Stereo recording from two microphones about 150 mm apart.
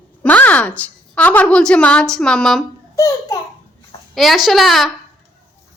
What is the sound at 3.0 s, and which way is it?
Speech, 25° left (ahead or behind).